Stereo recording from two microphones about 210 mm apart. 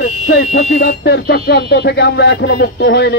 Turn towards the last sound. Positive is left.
turn(degrees=55)  # may be behind; listen again after turning